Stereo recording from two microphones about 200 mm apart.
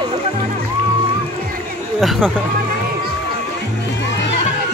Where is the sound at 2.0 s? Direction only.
Centre (ahead or behind).